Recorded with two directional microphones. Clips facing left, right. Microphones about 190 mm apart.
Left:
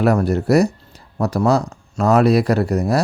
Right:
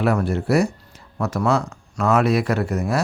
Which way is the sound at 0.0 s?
40° left (ahead or behind).